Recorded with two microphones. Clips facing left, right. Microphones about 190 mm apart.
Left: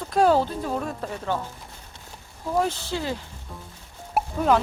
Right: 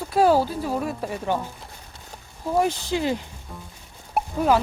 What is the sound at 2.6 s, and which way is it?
Speech, 15° right (ahead or behind).